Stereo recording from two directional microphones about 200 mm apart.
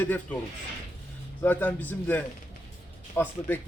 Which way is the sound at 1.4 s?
10° left (ahead or behind).